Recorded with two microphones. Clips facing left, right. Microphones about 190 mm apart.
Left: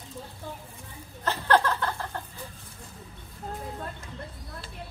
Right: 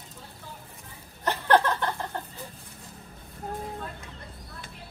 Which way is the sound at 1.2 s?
20° right (ahead or behind).